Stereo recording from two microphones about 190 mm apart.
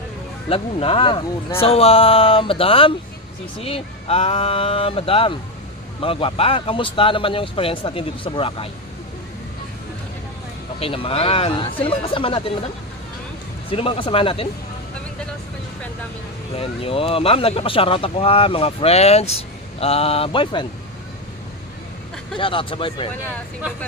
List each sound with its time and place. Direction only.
0.5 s speech: 30° left (ahead or behind)
10.8 s speech: 30° left (ahead or behind)
13.7 s speech: 30° left (ahead or behind)
16.6 s speech: 30° left (ahead or behind)
22.4 s speech: 25° left (ahead or behind)